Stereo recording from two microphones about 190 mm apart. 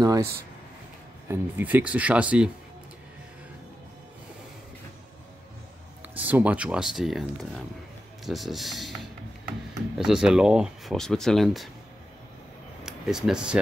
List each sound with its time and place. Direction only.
0.0 s speech: 20° right (ahead or behind)
1.3 s speech: 10° right (ahead or behind)
6.0 s speech: 10° right (ahead or behind)
9.9 s speech: centre (ahead or behind)
12.8 s speech: 5° right (ahead or behind)